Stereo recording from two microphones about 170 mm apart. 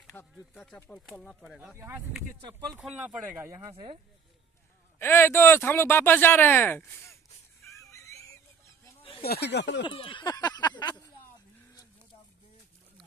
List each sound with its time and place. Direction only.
0.1 s speech: 15° left (ahead or behind); by 1.7 s centre (ahead or behind)
2.9 s speech: 10° right (ahead or behind)
3.7 s speech: 35° right (ahead or behind)
4.9 s speech: 15° left (ahead or behind)
7.6 s fowl: 15° left (ahead or behind)
9.2 s speech: 70° left (ahead or behind); by 9.8 s 90° left
9.8 s speech: 30° left (ahead or behind)